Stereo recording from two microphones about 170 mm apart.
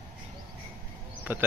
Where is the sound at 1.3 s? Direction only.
10° right (ahead or behind).